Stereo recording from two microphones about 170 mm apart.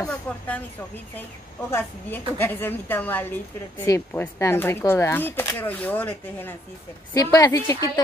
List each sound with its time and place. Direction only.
0.3 s speech: 10° left (ahead or behind)
1.7 s speech: 10° left (ahead or behind)
7.2 s a woman's voice: 20° left (ahead or behind)